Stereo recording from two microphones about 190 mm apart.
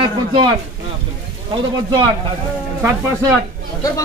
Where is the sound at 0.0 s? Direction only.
25° right (ahead or behind).